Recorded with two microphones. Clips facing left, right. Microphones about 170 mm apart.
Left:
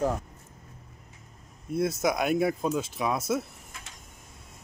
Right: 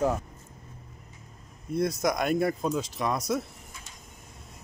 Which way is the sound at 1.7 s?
Centre (ahead or behind).